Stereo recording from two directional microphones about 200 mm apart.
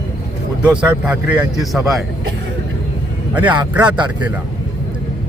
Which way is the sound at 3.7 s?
5° right (ahead or behind).